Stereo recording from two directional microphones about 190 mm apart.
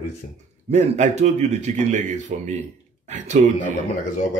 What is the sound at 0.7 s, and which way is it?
Speech, 40° right (ahead or behind).